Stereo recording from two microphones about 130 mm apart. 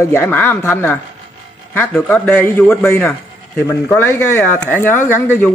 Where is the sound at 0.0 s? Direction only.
20° left (ahead or behind).